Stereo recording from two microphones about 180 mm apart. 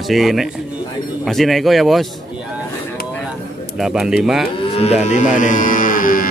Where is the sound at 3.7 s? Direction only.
Centre (ahead or behind).